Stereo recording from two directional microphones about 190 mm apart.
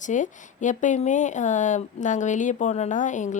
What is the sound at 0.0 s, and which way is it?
Speech, 40° left (ahead or behind).